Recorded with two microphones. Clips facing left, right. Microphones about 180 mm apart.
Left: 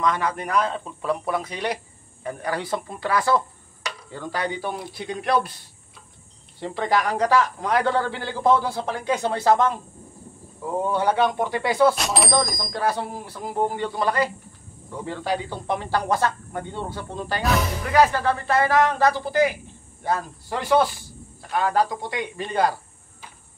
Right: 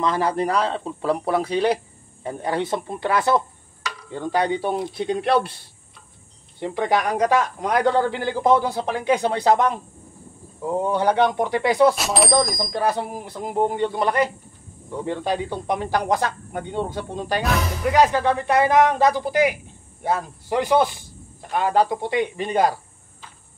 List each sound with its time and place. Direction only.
0.0 s speech: 30° right (ahead or behind)
6.6 s speech: 15° right (ahead or behind)
10.8 s speech: 15° right (ahead or behind)
11.9 s speech: centre (ahead or behind)
12.7 s speech: 20° right (ahead or behind)